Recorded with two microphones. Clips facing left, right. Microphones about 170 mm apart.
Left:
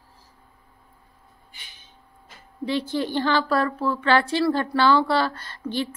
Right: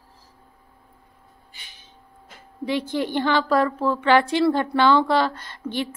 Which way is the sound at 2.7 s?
15° right (ahead or behind).